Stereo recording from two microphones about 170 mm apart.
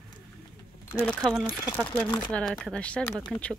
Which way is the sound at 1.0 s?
Centre (ahead or behind).